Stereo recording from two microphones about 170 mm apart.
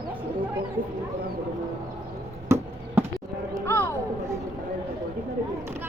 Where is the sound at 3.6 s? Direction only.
15° left (ahead or behind).